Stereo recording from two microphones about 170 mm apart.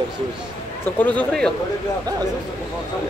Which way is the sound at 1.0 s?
10° left (ahead or behind).